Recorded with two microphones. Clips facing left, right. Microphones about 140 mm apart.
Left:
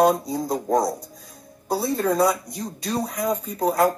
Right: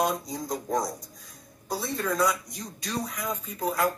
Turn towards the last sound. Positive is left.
turn(degrees=40)  # may be behind; listen again after turning